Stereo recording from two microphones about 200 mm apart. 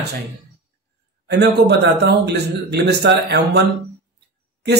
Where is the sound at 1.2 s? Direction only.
55° right (ahead or behind).